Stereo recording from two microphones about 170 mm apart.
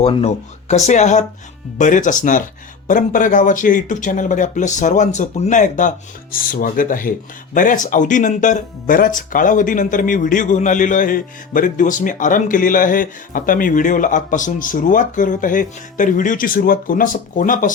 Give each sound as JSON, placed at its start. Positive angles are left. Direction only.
{"t": 0.0, "sound": "speech", "side_deg": 35}
{"t": 6.3, "sound": "speech", "side_deg": 55}